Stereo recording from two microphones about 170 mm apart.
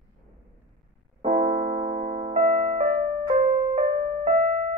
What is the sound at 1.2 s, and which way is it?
Keyboard, 40° right (ahead or behind).